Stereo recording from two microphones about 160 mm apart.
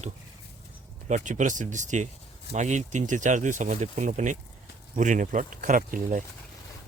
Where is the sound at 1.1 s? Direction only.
50° right (ahead or behind).